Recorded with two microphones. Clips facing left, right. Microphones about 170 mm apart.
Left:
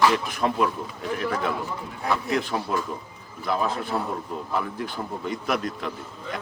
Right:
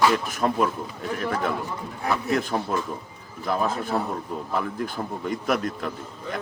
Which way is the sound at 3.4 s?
45° right (ahead or behind).